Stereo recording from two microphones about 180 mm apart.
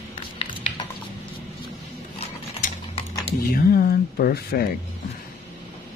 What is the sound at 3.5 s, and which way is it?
Music, 55° left (ahead or behind).